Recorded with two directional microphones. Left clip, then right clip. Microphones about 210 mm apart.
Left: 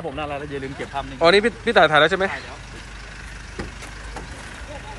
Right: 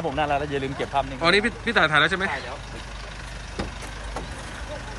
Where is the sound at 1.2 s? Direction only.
Centre (ahead or behind).